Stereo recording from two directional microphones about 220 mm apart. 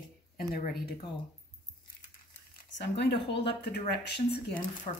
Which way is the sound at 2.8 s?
50° left (ahead or behind).